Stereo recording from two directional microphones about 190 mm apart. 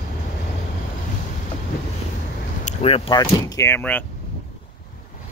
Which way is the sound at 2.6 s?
30° left (ahead or behind).